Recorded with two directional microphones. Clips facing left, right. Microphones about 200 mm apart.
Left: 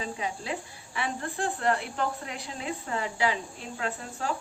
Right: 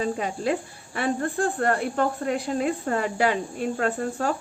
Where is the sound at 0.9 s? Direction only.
55° right (ahead or behind).